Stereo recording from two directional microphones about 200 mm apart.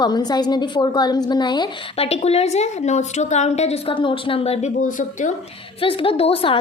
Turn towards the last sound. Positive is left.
turn(degrees=30)  # may be behind; listen again after turning